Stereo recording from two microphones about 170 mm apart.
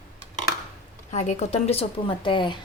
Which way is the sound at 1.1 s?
40° left (ahead or behind).